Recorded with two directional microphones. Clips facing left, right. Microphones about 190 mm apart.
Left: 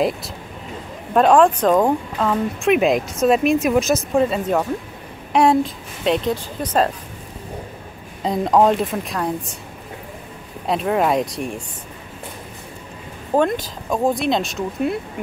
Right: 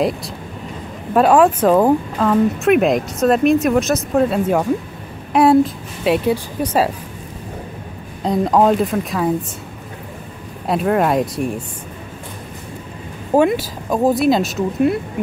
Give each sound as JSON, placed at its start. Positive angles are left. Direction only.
{"t": 1.1, "sound": "a woman's voice", "side_deg": -5}
{"t": 8.2, "sound": "speech", "side_deg": 0}
{"t": 10.7, "sound": "speech", "side_deg": 0}
{"t": 13.3, "sound": "speech", "side_deg": -10}